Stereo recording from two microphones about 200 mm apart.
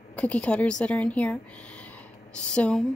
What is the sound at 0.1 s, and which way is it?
Speech, 5° left (ahead or behind).